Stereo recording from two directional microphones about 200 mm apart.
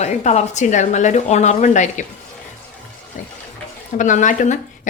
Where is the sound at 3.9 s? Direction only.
40° left (ahead or behind).